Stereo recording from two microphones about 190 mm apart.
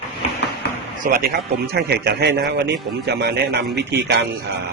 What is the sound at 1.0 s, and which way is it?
Speech, 50° right (ahead or behind).